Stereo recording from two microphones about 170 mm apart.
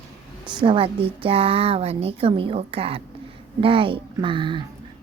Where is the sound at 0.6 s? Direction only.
30° right (ahead or behind).